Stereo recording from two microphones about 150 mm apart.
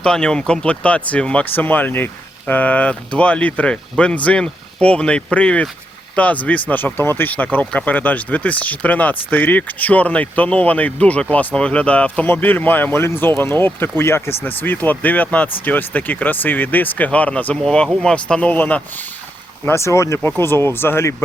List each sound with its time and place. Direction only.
0.0 s speech: 5° left (ahead or behind)